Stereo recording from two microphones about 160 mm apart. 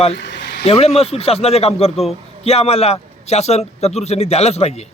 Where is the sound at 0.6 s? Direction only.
40° left (ahead or behind).